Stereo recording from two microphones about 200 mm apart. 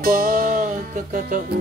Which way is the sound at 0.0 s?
45° right (ahead or behind).